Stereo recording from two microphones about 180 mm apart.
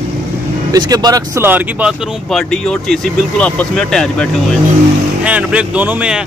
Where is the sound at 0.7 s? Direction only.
20° right (ahead or behind).